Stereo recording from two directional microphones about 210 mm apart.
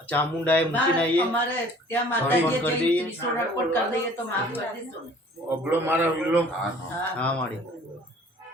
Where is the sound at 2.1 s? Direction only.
10° left (ahead or behind).